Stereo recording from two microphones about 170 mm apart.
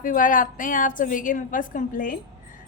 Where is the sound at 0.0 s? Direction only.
50° left (ahead or behind).